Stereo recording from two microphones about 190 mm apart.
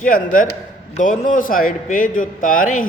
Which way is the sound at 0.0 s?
45° left (ahead or behind).